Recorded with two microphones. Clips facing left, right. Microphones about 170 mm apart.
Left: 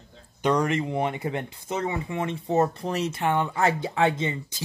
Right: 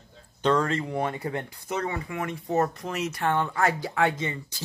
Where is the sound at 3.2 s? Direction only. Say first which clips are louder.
Even; 15° left (ahead or behind).